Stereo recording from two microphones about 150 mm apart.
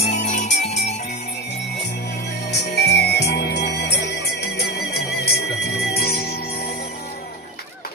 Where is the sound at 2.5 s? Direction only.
90° left.